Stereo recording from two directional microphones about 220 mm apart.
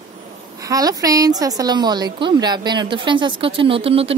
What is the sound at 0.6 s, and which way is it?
A woman's voice, 15° right (ahead or behind).